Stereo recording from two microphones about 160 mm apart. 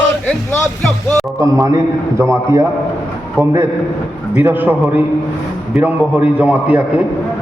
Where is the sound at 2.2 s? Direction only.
20° right (ahead or behind).